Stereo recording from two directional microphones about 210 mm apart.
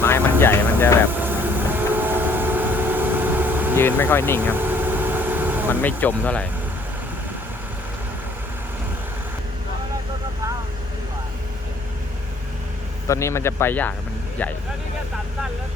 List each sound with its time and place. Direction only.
0.0 s vehicle: 10° left (ahead or behind)
1.2 s vehicle: 10° right (ahead or behind)
3.8 s speech: 10° left (ahead or behind)
4.4 s vehicle: 10° right (ahead or behind)
5.8 s speech: 10° left (ahead or behind)
13.1 s speech: 15° left (ahead or behind)